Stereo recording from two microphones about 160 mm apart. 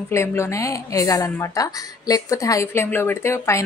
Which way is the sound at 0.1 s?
15° left (ahead or behind).